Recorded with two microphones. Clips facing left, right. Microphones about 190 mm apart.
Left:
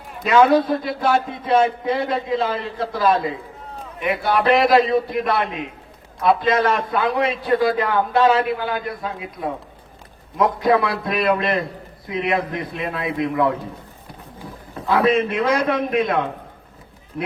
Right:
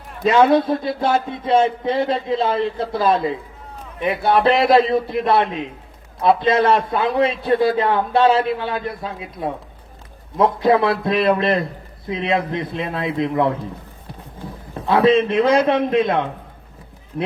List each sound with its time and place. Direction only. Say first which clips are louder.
0.3 s a man's voice: right 1 dB; 30° right (ahead or behind)
14.8 s a man's voice: right 3 dB; 30° right (ahead or behind)